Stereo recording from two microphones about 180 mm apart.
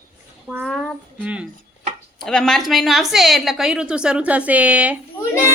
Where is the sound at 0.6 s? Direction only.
5° left (ahead or behind).